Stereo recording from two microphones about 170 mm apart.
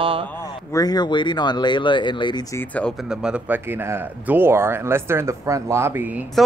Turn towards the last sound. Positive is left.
turn(degrees=-10)  # may be behind; listen again after turning